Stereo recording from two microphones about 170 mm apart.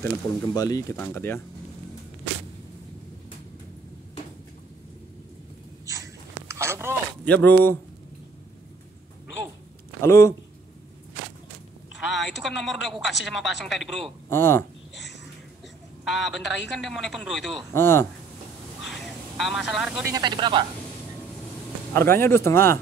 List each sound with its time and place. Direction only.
0.6 s speech: 20° left (ahead or behind)
5.9 s a sound: 20° right (ahead or behind)
7.2 s speech: 10° left (ahead or behind)
10.0 s speech: 15° left (ahead or behind)
12.0 s a sound: centre (ahead or behind)
12.4 s speech: centre (ahead or behind)
14.3 s speech: 15° left (ahead or behind)
16.0 s a man's voice: centre (ahead or behind)
17.7 s speech: 15° left (ahead or behind)
18.9 s vehicle: centre (ahead or behind)
20.1 s speech: 25° right (ahead or behind)
21.9 s speech: 15° left (ahead or behind)